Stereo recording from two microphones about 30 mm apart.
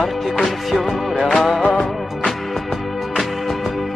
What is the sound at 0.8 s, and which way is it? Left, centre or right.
Music, centre.